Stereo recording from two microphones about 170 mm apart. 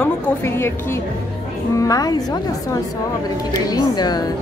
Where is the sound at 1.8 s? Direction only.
20° left (ahead or behind).